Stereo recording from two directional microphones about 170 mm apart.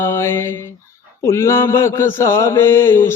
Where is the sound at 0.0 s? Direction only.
15° left (ahead or behind).